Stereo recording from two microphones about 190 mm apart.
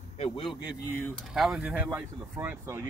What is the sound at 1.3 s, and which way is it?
Speech, 5° right (ahead or behind).